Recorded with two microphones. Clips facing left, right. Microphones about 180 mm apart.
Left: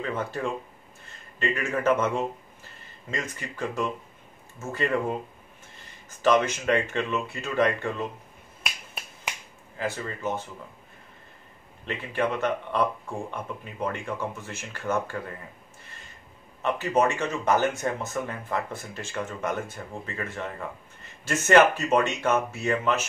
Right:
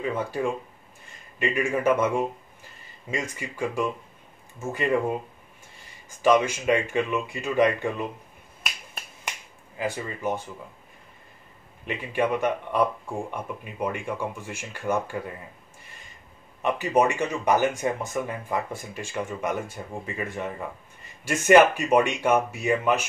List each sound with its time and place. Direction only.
0.0 s speech: 10° right (ahead or behind)
6.0 s speech: 10° right (ahead or behind)
9.8 s speech: 15° right (ahead or behind)
11.8 s speech: 10° right (ahead or behind)
16.6 s speech: 15° right (ahead or behind)